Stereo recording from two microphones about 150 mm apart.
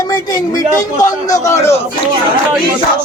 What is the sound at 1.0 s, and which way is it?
Speech, 20° left (ahead or behind).